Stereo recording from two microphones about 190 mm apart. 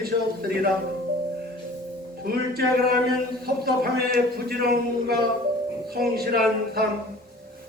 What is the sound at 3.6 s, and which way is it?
A man's voice, 55° right (ahead or behind).